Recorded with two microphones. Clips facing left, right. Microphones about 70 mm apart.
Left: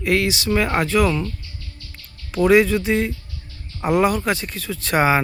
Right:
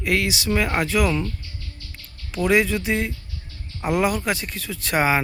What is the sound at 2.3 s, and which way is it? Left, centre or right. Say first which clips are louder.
Speech: left 5 dB; centre.